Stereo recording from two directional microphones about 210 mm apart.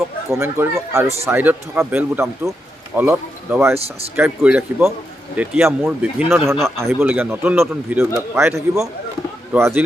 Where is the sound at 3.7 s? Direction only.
30° right (ahead or behind).